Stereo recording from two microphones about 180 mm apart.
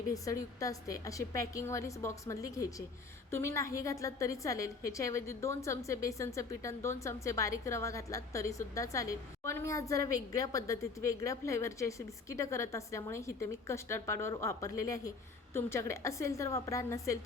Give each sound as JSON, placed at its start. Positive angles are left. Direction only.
{"t": 0.1, "sound": "a woman's voice", "side_deg": 20}